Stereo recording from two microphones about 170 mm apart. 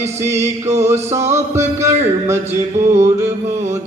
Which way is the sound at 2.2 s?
15° right (ahead or behind).